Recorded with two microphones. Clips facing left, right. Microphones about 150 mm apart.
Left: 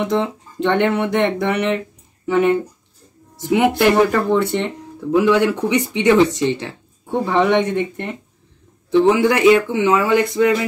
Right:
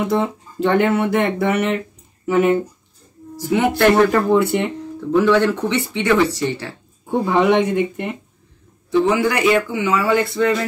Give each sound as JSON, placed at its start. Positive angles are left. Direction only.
{"t": 0.0, "sound": "speech", "side_deg": -5}
{"t": 3.4, "sound": "speech", "side_deg": 15}
{"t": 4.3, "sound": "speech", "side_deg": -10}
{"t": 5.1, "sound": "speech", "side_deg": 10}
{"t": 7.1, "sound": "speech", "side_deg": -10}
{"t": 9.0, "sound": "speech", "side_deg": 20}